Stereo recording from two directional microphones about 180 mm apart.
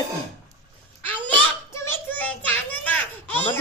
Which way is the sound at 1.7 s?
10° left (ahead or behind).